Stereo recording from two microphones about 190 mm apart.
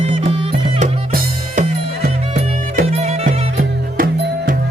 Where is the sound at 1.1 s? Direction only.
50° right (ahead or behind).